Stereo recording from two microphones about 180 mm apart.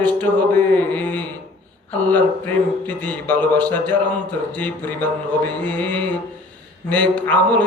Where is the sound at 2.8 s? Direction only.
10° left (ahead or behind).